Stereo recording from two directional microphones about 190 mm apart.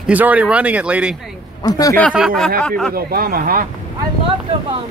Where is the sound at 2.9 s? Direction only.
50° right (ahead or behind).